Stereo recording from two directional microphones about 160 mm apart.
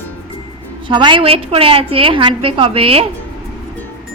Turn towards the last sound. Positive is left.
turn(degrees=-35)  # may be behind; listen again after turning